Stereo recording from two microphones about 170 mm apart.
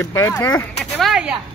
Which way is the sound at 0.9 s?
Centre (ahead or behind).